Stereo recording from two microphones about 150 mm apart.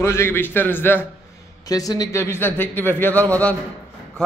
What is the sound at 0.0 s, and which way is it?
A man's voice, 15° left (ahead or behind).